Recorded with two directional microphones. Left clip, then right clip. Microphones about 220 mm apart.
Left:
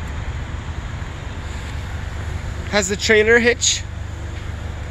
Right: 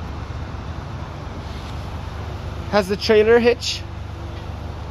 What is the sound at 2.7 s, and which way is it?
Speech, 10° right (ahead or behind).